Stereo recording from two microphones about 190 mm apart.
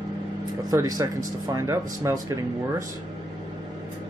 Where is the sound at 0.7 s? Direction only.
20° right (ahead or behind).